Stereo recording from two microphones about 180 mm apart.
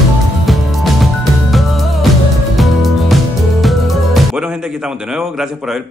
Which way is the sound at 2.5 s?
Centre (ahead or behind).